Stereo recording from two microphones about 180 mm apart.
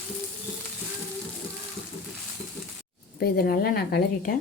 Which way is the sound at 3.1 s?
60° left (ahead or behind).